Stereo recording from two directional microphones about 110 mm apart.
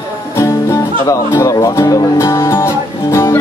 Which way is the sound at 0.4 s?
25° left (ahead or behind).